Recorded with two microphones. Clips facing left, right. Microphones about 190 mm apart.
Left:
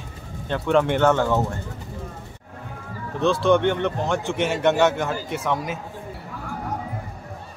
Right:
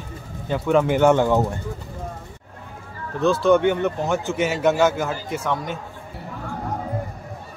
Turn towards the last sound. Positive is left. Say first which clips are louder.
# even
turn(degrees=0)  # may be behind; listen again after turning